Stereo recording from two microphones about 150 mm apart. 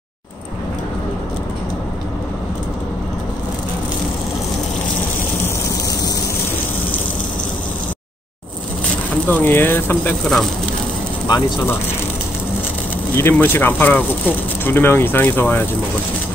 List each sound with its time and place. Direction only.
9.3 s speech: 15° left (ahead or behind)
11.2 s speech: 30° left (ahead or behind)
13.1 s speech: 15° left (ahead or behind)